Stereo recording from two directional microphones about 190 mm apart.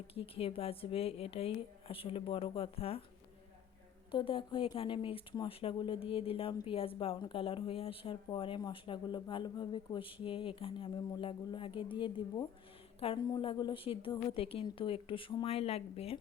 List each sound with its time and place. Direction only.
0.1 s speech: 30° left (ahead or behind)
4.1 s speech: 25° left (ahead or behind)